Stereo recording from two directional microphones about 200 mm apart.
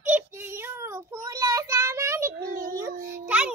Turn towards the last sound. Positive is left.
turn(degrees=-5)  # may be behind; listen again after turning